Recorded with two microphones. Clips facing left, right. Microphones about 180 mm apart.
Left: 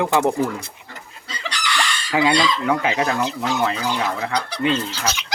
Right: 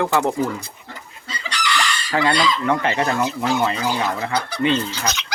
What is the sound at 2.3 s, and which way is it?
Speech, 5° left (ahead or behind).